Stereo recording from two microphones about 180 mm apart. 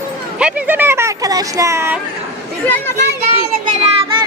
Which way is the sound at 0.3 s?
5° right (ahead or behind).